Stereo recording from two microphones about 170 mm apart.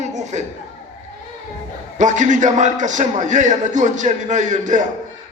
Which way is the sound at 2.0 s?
45° right (ahead or behind).